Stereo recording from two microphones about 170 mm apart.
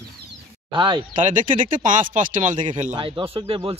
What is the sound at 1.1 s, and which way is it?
Speech, 50° right (ahead or behind).